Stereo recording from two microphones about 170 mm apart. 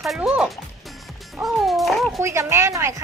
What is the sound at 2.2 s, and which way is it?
Speech, 15° right (ahead or behind).